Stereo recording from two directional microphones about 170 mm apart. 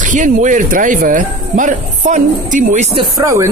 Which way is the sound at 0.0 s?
50° right (ahead or behind).